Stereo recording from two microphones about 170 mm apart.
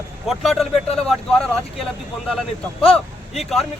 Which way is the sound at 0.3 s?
Centre (ahead or behind).